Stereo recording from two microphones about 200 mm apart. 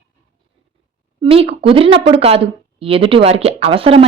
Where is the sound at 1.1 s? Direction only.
25° right (ahead or behind).